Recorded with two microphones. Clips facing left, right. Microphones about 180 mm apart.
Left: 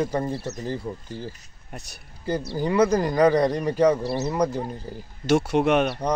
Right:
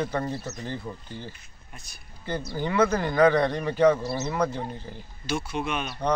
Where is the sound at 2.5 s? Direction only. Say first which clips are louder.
Left 3 dB; 35° left (ahead or behind).